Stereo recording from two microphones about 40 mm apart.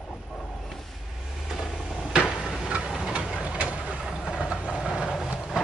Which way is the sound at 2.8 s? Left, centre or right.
Centre.